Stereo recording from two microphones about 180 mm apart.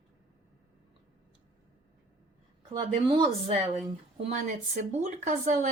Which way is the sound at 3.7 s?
35° right (ahead or behind).